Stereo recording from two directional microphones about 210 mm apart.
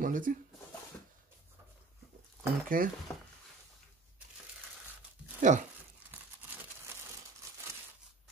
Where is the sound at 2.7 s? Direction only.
40° right (ahead or behind).